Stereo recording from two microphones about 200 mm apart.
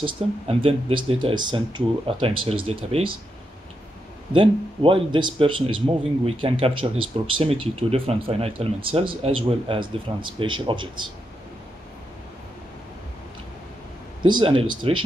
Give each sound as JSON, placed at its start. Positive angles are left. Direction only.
{"t": 0.0, "sound": "speech", "side_deg": -30}
{"t": 4.3, "sound": "speech", "side_deg": -25}
{"t": 14.2, "sound": "speech", "side_deg": -25}